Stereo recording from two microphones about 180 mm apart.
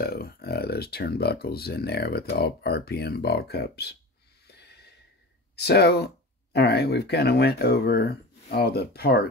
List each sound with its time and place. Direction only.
0.0 s speech: 60° left (ahead or behind)
4.5 s snort: 65° left (ahead or behind)
5.6 s speech: 65° left (ahead or behind)